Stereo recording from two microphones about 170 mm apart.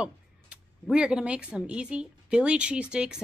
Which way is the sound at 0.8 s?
5° right (ahead or behind).